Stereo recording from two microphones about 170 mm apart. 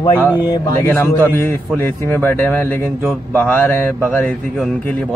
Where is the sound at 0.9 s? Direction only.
10° left (ahead or behind).